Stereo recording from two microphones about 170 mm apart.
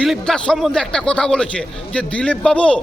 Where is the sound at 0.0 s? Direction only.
5° left (ahead or behind).